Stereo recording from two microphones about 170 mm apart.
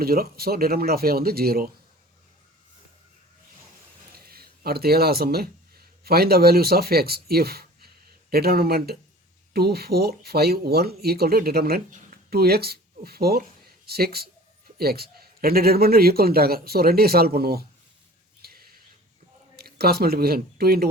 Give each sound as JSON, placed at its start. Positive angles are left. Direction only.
{"t": 0.0, "sound": "a man's voice", "side_deg": -65}
{"t": 4.1, "sound": "a man's voice", "side_deg": -65}
{"t": 18.4, "sound": "a sound", "side_deg": -60}
{"t": 19.5, "sound": "speech", "side_deg": -65}